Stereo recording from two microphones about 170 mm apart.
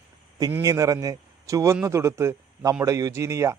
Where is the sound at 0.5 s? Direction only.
20° right (ahead or behind).